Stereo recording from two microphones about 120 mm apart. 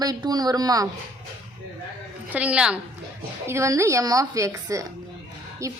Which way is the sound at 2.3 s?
10° right (ahead or behind).